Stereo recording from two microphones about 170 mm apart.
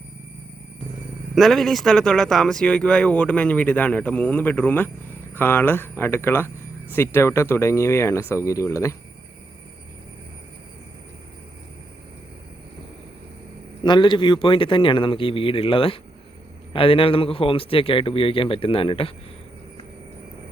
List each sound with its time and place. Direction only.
1.4 s speech: centre (ahead or behind); by 9.0 s 20° left (ahead or behind)
13.8 s a man's voice: 25° left (ahead or behind)